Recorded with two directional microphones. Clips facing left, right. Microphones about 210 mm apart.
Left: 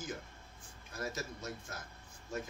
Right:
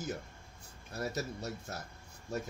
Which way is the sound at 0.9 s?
35° right (ahead or behind).